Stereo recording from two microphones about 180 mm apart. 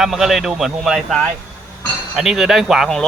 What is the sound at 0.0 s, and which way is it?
Speech, centre (ahead or behind).